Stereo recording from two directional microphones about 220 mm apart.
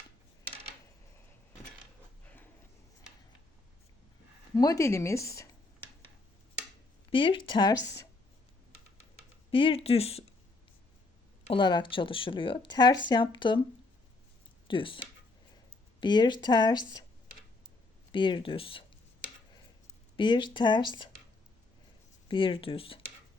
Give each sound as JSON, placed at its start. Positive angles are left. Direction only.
{"t": 2.2, "sound": "a sound", "side_deg": 5}
{"t": 4.5, "sound": "speech", "side_deg": 15}
{"t": 7.1, "sound": "speech", "side_deg": 20}
{"t": 9.5, "sound": "speech", "side_deg": 25}
{"t": 11.4, "sound": "speech", "side_deg": 20}
{"t": 14.7, "sound": "speech", "side_deg": 25}
{"t": 18.1, "sound": "speech", "side_deg": 20}
{"t": 20.1, "sound": "speech", "side_deg": 20}
{"t": 22.3, "sound": "speech", "side_deg": 25}